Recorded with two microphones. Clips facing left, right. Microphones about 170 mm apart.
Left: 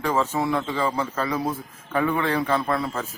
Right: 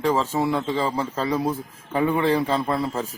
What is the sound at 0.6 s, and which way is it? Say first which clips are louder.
Speech: right 1 dB; 35° right (ahead or behind).